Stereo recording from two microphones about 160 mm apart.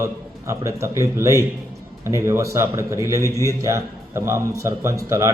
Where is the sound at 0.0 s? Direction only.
20° right (ahead or behind).